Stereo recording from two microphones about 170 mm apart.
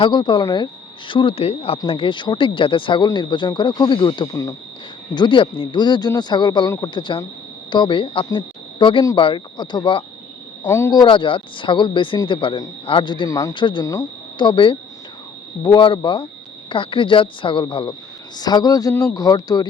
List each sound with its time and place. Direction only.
0.0 s a man's voice: 30° left (ahead or behind)
10.7 s speech: 15° left (ahead or behind)
11.0 s a man's voice: 30° left (ahead or behind)